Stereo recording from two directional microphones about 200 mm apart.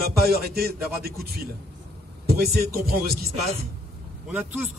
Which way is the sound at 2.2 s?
50° right (ahead or behind).